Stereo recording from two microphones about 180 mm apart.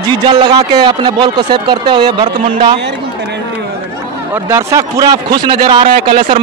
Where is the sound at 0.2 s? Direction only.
25° right (ahead or behind).